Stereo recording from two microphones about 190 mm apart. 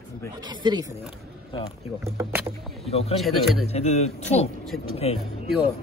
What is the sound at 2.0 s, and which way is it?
Speech, 15° right (ahead or behind).